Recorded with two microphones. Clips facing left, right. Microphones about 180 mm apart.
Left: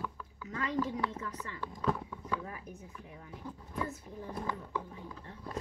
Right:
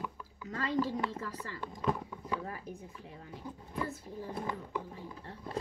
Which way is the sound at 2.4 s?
30° right (ahead or behind).